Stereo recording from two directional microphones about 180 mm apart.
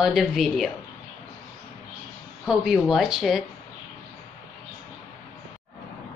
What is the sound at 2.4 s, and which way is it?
A woman's voice, 5° right (ahead or behind).